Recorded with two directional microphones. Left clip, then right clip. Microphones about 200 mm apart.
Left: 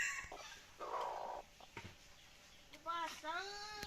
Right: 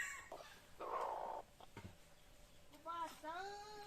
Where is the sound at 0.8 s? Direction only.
15° right (ahead or behind).